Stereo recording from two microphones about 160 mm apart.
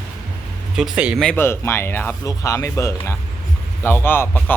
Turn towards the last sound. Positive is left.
turn(degrees=10)  # may be behind; listen again after turning